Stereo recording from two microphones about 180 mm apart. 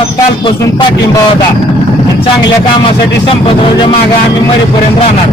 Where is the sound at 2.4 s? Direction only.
25° left (ahead or behind).